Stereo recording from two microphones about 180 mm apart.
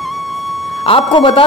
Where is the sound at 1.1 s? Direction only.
30° left (ahead or behind).